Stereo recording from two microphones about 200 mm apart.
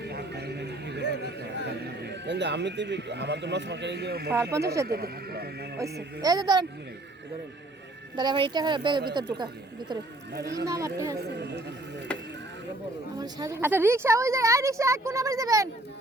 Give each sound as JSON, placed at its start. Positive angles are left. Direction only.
{"t": 0.0, "sound": "a sound", "side_deg": -55}
{"t": 1.1, "sound": "a man's voice", "side_deg": -55}
{"t": 6.2, "sound": "speech", "side_deg": -20}
{"t": 8.1, "sound": "speech", "side_deg": -20}
{"t": 10.3, "sound": "speech", "side_deg": -55}
{"t": 10.7, "sound": "speech", "side_deg": -15}
{"t": 11.3, "sound": "speech", "side_deg": -55}
{"t": 13.1, "sound": "speech", "side_deg": -20}